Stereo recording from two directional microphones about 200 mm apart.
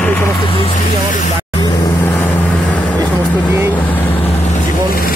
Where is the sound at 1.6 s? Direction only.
15° left (ahead or behind).